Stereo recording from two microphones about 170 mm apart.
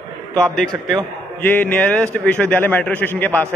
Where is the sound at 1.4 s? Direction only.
10° left (ahead or behind).